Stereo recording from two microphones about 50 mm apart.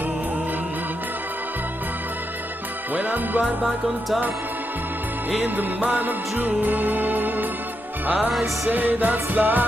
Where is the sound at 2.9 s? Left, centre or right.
Right.